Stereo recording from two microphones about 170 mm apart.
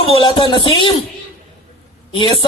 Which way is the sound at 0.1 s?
30° left (ahead or behind).